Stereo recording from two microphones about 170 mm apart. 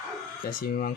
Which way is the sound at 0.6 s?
55° left (ahead or behind).